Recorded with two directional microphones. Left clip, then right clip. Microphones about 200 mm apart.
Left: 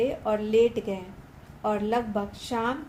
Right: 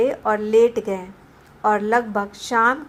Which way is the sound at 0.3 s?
15° right (ahead or behind).